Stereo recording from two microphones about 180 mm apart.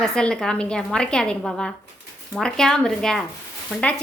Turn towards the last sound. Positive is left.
turn(degrees=5)  # may be behind; listen again after turning